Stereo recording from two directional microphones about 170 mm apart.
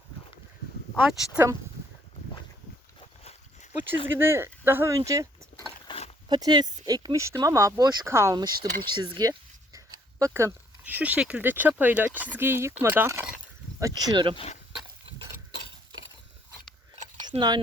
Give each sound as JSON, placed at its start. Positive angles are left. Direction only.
{"t": 0.9, "sound": "speech", "side_deg": -5}
{"t": 3.0, "sound": "dog", "side_deg": 35}
{"t": 4.2, "sound": "speech", "side_deg": -15}
{"t": 5.9, "sound": "a sound", "side_deg": 35}
{"t": 6.2, "sound": "speech", "side_deg": -25}
{"t": 14.3, "sound": "speech", "side_deg": 40}
{"t": 17.2, "sound": "a sound", "side_deg": -25}